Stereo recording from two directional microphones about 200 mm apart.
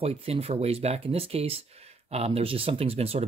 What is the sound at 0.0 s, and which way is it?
Speech, 30° right (ahead or behind).